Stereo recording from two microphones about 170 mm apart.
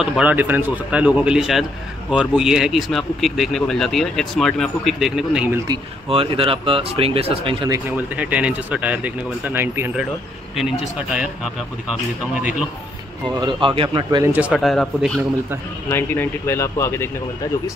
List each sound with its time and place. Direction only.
0.0 s speech: 5° right (ahead or behind)
5.7 s speech: 30° right (ahead or behind)
8.2 s speech: 10° right (ahead or behind)
13.4 s speech: 30° right (ahead or behind)
14.2 s speech: 10° right (ahead or behind)
15.9 s speech: 15° left (ahead or behind)